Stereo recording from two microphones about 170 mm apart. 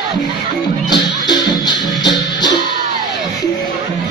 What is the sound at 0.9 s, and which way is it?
Music, 25° left (ahead or behind).